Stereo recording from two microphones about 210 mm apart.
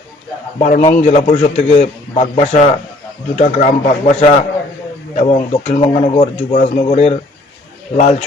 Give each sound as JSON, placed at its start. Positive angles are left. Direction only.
{"t": 0.6, "sound": "a man's voice", "side_deg": 35}